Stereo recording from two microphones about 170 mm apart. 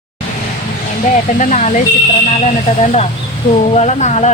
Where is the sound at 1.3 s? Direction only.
45° left (ahead or behind).